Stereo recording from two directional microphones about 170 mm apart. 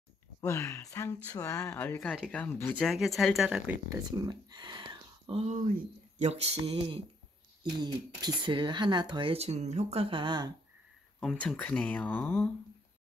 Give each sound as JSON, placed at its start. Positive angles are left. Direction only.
{"t": 0.4, "sound": "speech", "side_deg": 15}
{"t": 3.9, "sound": "speech", "side_deg": -25}
{"t": 6.6, "sound": "speech", "side_deg": -30}
{"t": 11.1, "sound": "speech", "side_deg": 5}